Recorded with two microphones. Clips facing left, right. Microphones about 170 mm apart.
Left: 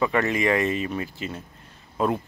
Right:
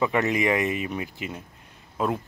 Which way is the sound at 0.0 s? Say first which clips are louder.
Even; 15° right (ahead or behind).